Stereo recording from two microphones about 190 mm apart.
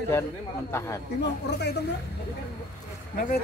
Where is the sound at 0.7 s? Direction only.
15° left (ahead or behind).